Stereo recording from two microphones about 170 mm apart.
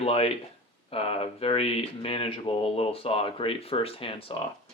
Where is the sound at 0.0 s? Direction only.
35° left (ahead or behind).